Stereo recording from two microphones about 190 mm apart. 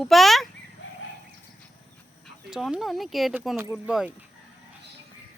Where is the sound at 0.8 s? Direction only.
80° left.